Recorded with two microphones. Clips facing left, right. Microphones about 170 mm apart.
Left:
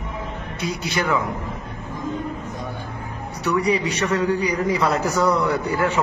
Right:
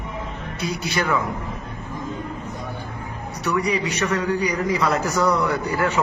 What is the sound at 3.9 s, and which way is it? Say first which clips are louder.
Speech: left 1 dB; 30° left (ahead or behind).